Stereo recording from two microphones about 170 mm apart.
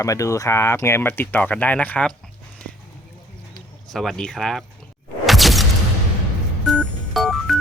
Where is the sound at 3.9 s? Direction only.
Centre (ahead or behind).